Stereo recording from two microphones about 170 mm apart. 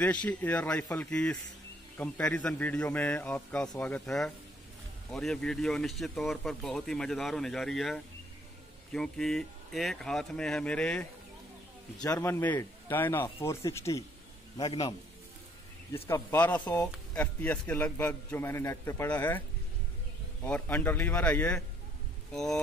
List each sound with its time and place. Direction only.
0.0 s a man's voice: 10° left (ahead or behind)
12.0 s a man's voice: 15° left (ahead or behind)
15.9 s a man's voice: 15° left (ahead or behind)
20.4 s a man's voice: 10° left (ahead or behind)